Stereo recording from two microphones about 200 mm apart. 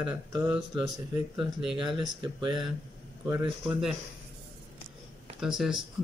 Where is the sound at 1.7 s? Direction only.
25° right (ahead or behind).